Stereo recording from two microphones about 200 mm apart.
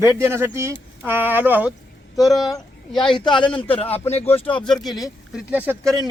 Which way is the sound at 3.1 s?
25° left (ahead or behind).